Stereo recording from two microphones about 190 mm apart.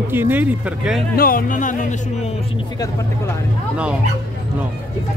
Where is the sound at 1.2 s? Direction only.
50° left (ahead or behind).